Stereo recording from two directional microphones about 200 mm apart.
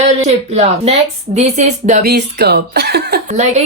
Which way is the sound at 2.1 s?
55° right (ahead or behind).